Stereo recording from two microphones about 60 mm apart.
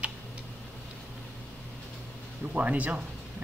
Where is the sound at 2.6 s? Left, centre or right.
Right.